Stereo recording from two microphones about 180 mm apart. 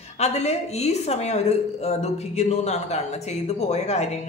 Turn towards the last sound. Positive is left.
turn(degrees=40)  # may be behind; listen again after turning